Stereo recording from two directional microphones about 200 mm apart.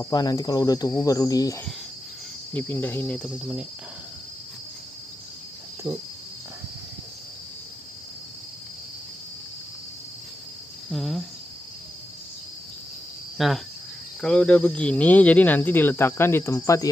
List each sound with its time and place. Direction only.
0.1 s speech: 20° left (ahead or behind)
10.9 s cricket: centre (ahead or behind)
13.4 s cricket: centre (ahead or behind)
14.2 s speech: 5° left (ahead or behind)